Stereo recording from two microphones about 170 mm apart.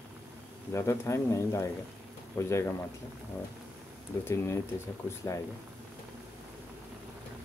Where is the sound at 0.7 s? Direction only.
15° left (ahead or behind).